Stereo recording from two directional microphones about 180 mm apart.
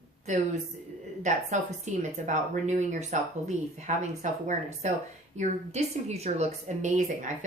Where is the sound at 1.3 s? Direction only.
45° right (ahead or behind).